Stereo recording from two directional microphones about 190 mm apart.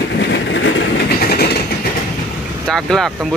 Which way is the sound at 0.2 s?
70° left (ahead or behind).